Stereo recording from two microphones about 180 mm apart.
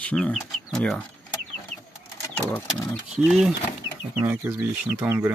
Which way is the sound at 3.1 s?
Centre (ahead or behind).